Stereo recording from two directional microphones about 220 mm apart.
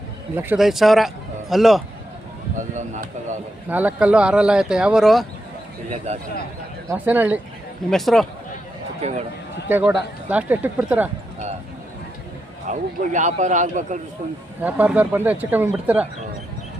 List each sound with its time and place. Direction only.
0.3 s speech: 5° right (ahead or behind)
2.7 s a man's voice: 35° right (ahead or behind)
3.7 s speech: 5° right (ahead or behind)
6.9 s speech: 10° right (ahead or behind)
9.0 s a man's voice: 30° right (ahead or behind)
9.6 s speech: 10° right (ahead or behind)
12.6 s a man's voice: 35° right (ahead or behind)
14.6 s speech: 5° right (ahead or behind)